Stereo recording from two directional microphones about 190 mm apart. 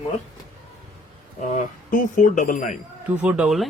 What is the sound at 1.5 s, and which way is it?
Speech, 45° left (ahead or behind).